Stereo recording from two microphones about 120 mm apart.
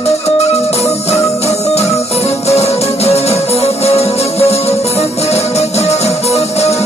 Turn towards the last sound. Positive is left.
turn(degrees=65)  # may be behind; listen again after turning